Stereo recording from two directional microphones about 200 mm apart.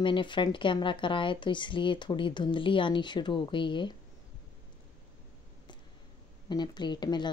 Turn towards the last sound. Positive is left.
turn(degrees=20)  # may be behind; listen again after turning